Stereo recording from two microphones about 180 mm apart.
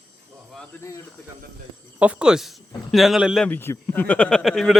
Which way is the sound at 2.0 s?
5° right (ahead or behind).